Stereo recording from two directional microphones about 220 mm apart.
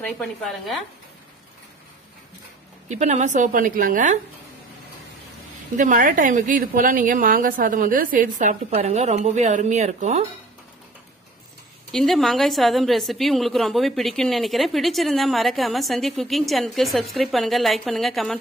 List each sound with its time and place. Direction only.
0.0 s a woman's voice: centre (ahead or behind)
2.9 s a woman's voice: 30° right (ahead or behind)
5.8 s a woman's voice: 35° right (ahead or behind)
11.9 s a woman's voice: centre (ahead or behind)